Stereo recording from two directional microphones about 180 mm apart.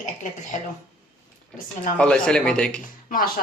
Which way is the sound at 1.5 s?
45° left (ahead or behind).